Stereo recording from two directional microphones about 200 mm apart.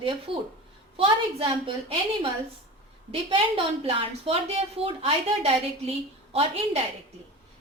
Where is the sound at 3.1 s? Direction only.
30° right (ahead or behind).